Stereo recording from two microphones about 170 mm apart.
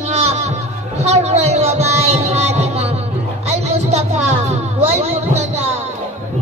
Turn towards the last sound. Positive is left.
turn(degrees=-40)  # may be behind; listen again after turning